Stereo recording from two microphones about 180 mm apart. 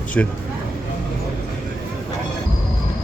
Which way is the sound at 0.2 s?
5° left (ahead or behind).